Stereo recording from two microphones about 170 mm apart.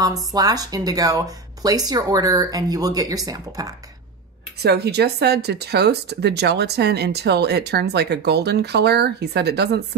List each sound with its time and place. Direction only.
0.0 s speech: 20° right (ahead or behind)
4.6 s speech: 75° right (ahead or behind)